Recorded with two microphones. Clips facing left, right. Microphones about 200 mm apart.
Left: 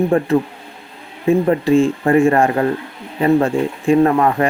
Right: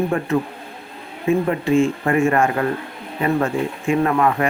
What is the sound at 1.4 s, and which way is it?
Speech, 35° left (ahead or behind).